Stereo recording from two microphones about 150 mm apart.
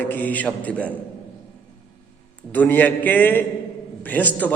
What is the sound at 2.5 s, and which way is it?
A man's voice, 10° left (ahead or behind).